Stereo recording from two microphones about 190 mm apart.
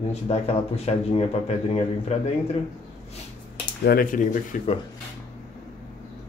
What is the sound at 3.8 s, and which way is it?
Speech, 50° left (ahead or behind).